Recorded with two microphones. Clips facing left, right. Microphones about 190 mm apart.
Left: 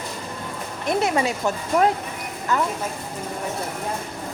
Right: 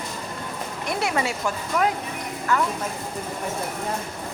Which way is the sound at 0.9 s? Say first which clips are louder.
Left 4 dB; 20° left (ahead or behind).